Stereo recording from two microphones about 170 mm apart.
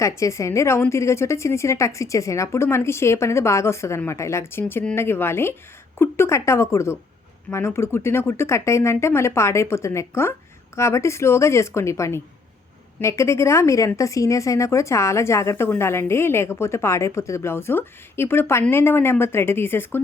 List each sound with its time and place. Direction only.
0.2 s a woman's voice: 15° left (ahead or behind)